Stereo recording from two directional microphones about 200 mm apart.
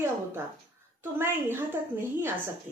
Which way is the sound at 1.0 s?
10° right (ahead or behind).